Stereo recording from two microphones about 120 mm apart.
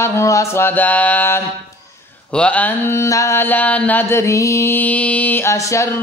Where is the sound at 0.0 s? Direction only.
25° left (ahead or behind).